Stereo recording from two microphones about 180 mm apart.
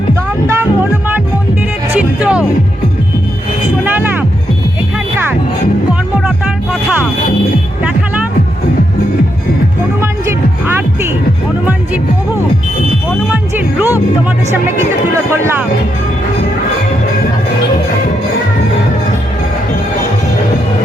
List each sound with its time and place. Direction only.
0.4 s music: 15° right (ahead or behind)
3.8 s music: 10° right (ahead or behind)
5.9 s music: 5° right (ahead or behind)
13.3 s music: 10° right (ahead or behind)